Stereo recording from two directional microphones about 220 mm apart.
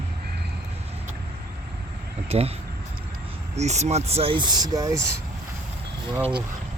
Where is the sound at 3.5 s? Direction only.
30° right (ahead or behind).